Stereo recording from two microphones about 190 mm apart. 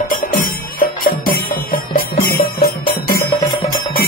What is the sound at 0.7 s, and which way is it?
Music, 50° left (ahead or behind).